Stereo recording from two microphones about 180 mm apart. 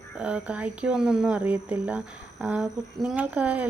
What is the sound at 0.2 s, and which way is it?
Speech, 5° right (ahead or behind).